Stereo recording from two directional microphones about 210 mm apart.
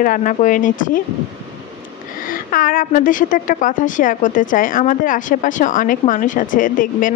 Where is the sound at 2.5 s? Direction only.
40° left (ahead or behind).